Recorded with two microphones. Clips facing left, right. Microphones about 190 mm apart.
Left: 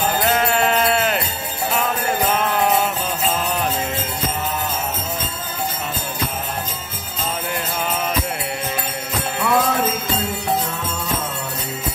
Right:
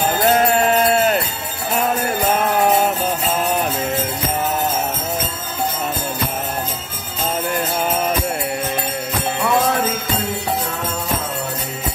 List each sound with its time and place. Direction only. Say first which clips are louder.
0.3 s sheep: right 5 dB; 40° right (ahead or behind)